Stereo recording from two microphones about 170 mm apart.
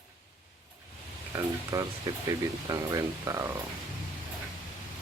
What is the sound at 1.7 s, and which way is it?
Speech, 20° right (ahead or behind).